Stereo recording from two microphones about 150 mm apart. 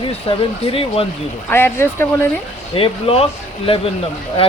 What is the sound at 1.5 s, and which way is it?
Speech, 15° left (ahead or behind).